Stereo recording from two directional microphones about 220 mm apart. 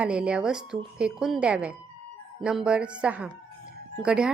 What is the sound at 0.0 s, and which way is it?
Speech, 5° right (ahead or behind).